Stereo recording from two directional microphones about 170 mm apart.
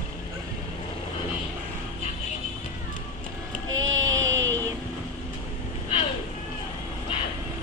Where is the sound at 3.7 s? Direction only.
20° right (ahead or behind).